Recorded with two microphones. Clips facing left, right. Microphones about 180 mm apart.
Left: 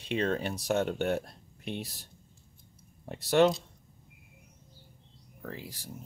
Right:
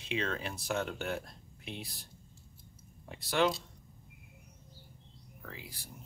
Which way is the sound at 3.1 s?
45° left (ahead or behind).